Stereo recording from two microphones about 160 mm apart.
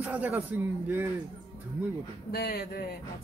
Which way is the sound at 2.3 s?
70° left (ahead or behind).